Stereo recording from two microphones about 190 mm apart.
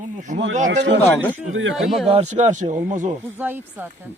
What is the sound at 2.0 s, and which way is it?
Speech, 35° right (ahead or behind).